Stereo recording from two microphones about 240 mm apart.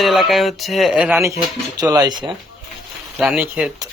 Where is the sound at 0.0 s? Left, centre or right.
Centre.